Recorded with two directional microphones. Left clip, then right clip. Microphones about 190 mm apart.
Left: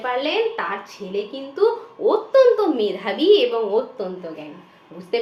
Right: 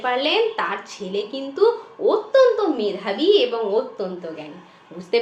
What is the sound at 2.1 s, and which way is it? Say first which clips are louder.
A woman's voice: left 1 dB; 15° left (ahead or behind).